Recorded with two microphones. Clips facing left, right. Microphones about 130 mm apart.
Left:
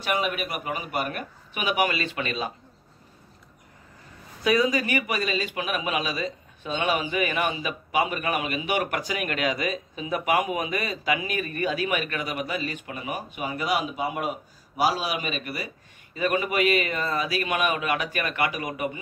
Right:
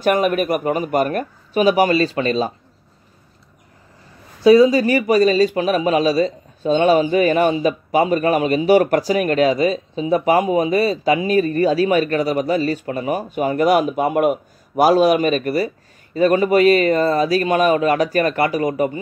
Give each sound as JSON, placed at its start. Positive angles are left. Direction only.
{"t": 0.0, "sound": "speech", "side_deg": -45}
{"t": 4.4, "sound": "speech", "side_deg": -30}